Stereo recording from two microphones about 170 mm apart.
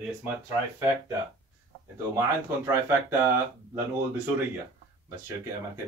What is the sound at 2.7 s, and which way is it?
Speech, 15° right (ahead or behind).